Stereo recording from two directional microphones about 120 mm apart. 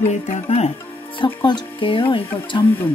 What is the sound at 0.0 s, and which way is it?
Music, 70° left (ahead or behind).